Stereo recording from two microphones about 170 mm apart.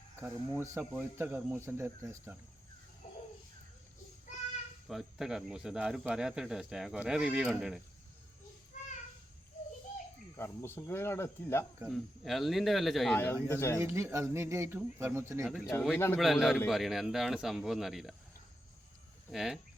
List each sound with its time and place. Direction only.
0.2 s speech: 15° right (ahead or behind)
4.9 s speech: centre (ahead or behind)
10.3 s speech: 15° left (ahead or behind)
11.9 s speech: centre (ahead or behind)
13.1 s speech: 15° left (ahead or behind)
13.8 s speech: 15° right (ahead or behind)
15.4 s speech: 5° right (ahead or behind)
16.0 s speech: 15° left (ahead or behind)
16.2 s speech: centre (ahead or behind)
19.3 s speech: 5° right (ahead or behind)